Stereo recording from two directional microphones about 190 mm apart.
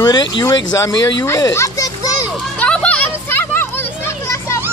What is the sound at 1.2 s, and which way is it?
Children playing, 20° left (ahead or behind).